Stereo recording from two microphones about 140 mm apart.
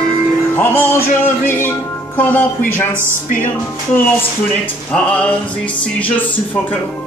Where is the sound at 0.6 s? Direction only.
15° left (ahead or behind).